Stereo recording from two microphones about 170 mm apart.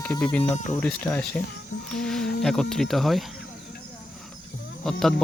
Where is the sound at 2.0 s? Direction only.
5° left (ahead or behind).